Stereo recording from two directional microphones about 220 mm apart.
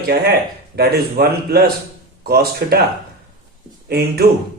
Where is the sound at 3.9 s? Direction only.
45° right (ahead or behind).